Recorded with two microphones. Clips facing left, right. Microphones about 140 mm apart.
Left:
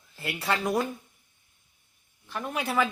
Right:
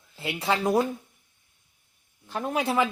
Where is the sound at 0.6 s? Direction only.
30° right (ahead or behind).